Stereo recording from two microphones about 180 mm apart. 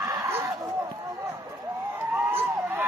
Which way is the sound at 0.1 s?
15° right (ahead or behind).